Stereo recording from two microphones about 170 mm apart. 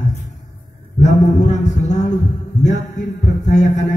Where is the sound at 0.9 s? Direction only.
45° left (ahead or behind).